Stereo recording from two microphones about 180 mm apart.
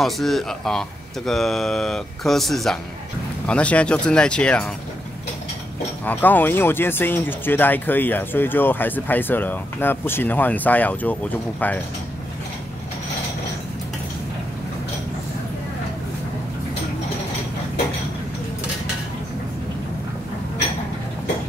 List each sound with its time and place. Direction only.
0.0 s speech: centre (ahead or behind)
6.0 s speech: 10° left (ahead or behind)